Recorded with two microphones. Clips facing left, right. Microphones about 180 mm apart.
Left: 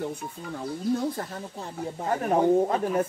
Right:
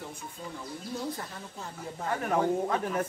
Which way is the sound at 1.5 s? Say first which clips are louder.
Left 6 dB; 35° left (ahead or behind).